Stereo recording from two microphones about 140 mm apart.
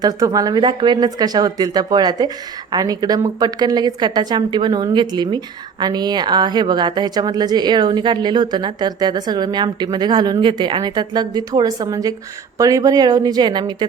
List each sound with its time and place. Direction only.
0.0 s a woman's voice: 25° right (ahead or behind)